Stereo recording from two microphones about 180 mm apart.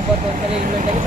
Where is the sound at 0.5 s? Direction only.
40° right (ahead or behind).